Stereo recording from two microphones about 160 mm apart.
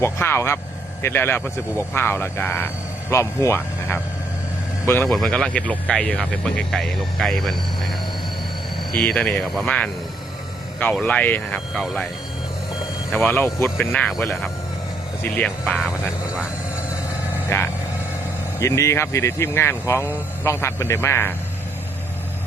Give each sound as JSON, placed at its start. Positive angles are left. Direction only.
{"t": 0.0, "sound": "speech", "side_deg": 15}
{"t": 5.0, "sound": "speech", "side_deg": 5}
{"t": 9.0, "sound": "speech", "side_deg": 5}
{"t": 11.0, "sound": "speech", "side_deg": 10}
{"t": 13.2, "sound": "speech", "side_deg": 15}
{"t": 15.6, "sound": "speech", "side_deg": -5}
{"t": 17.5, "sound": "speech", "side_deg": 20}